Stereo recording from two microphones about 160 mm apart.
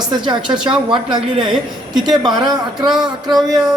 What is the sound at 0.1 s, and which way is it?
Speech, 30° right (ahead or behind).